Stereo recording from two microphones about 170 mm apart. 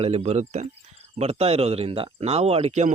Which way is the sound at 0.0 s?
40° right (ahead or behind).